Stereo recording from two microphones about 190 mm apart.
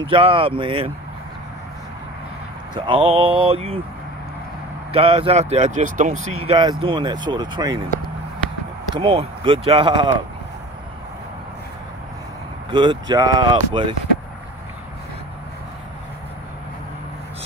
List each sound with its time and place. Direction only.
0.0 s speech: 25° right (ahead or behind)
2.7 s speech: 30° right (ahead or behind)
4.9 s speech: 30° right (ahead or behind)
8.9 s speech: 30° right (ahead or behind)
12.7 s speech: 25° right (ahead or behind)